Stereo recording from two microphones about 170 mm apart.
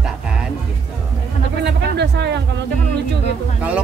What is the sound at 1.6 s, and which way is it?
Speech, 90° right.